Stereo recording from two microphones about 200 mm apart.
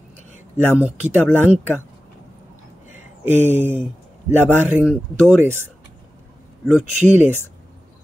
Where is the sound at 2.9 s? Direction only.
10° right (ahead or behind).